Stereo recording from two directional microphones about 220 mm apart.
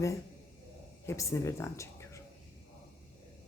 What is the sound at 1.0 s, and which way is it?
A woman's voice, 15° left (ahead or behind).